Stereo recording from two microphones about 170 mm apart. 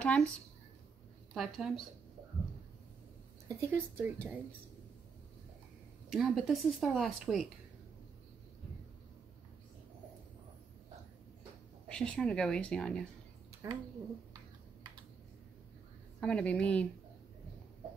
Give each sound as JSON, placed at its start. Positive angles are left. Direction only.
{"t": 0.0, "sound": "a sound", "side_deg": 5}
{"t": 1.3, "sound": "speech", "side_deg": -5}
{"t": 3.4, "sound": "speech", "side_deg": -15}
{"t": 6.0, "sound": "speech", "side_deg": 0}
{"t": 11.9, "sound": "speech", "side_deg": 5}
{"t": 13.6, "sound": "speech", "side_deg": -15}
{"t": 16.2, "sound": "a woman's voice", "side_deg": 5}